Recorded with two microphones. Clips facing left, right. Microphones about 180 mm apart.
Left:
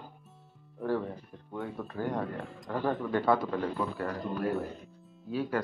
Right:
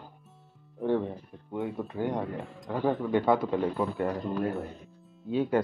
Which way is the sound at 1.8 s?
20° right (ahead or behind).